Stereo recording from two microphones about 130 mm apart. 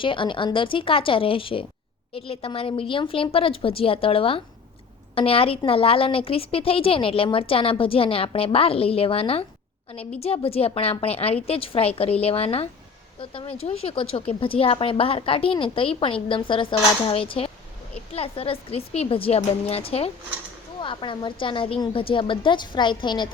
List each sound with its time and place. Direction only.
0.0 s a woman's voice: 40° left (ahead or behind)
20.8 s a woman's voice: 40° left (ahead or behind)